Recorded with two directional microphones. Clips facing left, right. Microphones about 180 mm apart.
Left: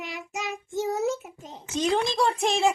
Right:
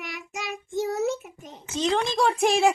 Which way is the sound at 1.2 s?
15° right (ahead or behind).